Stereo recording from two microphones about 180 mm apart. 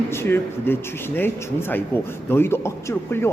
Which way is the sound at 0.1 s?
15° left (ahead or behind).